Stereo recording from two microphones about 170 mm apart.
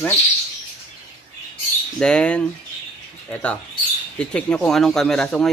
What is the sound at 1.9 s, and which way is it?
Speech, 5° left (ahead or behind).